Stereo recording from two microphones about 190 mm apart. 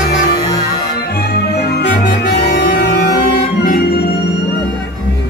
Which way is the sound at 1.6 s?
55° left (ahead or behind).